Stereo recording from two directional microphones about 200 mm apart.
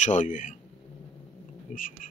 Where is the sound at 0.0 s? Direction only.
40° left (ahead or behind).